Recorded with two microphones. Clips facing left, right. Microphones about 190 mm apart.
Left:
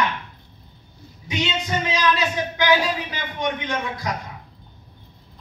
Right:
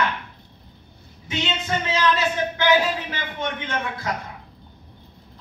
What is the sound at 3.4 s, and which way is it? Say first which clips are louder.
Speech: left 3 dB; 15° left (ahead or behind).